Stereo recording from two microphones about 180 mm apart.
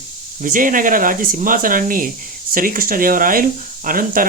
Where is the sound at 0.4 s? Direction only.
45° right (ahead or behind).